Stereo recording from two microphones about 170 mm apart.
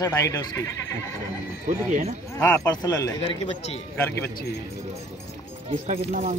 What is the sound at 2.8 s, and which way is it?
Speech, 20° left (ahead or behind).